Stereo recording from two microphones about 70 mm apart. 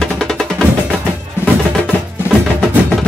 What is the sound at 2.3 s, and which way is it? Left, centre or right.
Music, left.